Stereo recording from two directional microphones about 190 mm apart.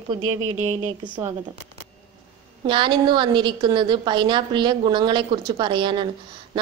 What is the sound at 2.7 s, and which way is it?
A woman's voice, 25° right (ahead or behind).